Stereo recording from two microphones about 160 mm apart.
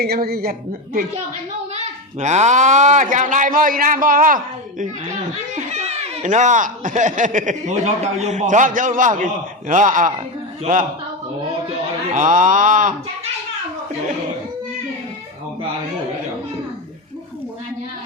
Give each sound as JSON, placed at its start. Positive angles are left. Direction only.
{"t": 0.0, "sound": "a man's voice", "side_deg": -75}
{"t": 1.7, "sound": "speech", "side_deg": -45}
{"t": 5.5, "sound": "speech", "side_deg": -45}
{"t": 12.1, "sound": "speech", "side_deg": -55}